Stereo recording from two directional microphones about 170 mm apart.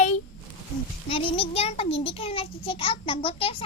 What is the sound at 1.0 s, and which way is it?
A child's voice, 35° left (ahead or behind).